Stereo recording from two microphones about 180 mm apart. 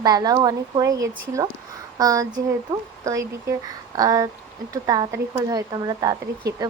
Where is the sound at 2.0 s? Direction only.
20° right (ahead or behind).